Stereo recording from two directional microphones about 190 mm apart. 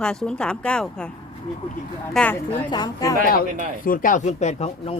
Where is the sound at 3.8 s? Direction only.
45° left (ahead or behind).